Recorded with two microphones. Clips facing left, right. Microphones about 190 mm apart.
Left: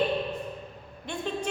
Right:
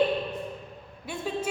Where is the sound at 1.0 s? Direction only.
5° right (ahead or behind).